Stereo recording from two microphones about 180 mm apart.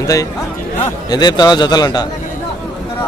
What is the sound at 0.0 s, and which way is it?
A man's voice, 20° left (ahead or behind).